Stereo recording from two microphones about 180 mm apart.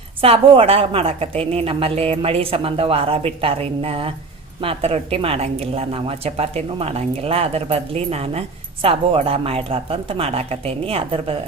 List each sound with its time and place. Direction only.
0.2 s a woman's voice: 30° right (ahead or behind)